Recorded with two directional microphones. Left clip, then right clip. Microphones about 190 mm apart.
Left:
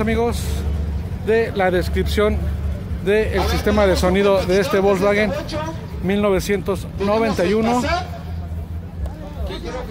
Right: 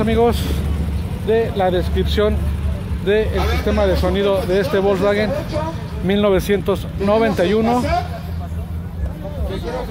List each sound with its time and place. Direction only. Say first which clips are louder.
0.0 s speech: right 4 dB; centre (ahead or behind)
1.3 s speech: even; 10° left (ahead or behind)
3.3 s speech: left 1 dB; 50° left (ahead or behind)
3.8 s speech: left 1 dB; 20° left (ahead or behind); by 7.8 s 5° left (ahead or behind)